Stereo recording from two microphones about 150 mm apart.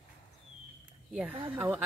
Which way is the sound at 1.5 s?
10° right (ahead or behind).